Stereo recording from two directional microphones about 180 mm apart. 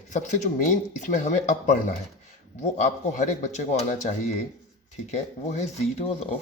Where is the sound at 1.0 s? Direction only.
45° left (ahead or behind).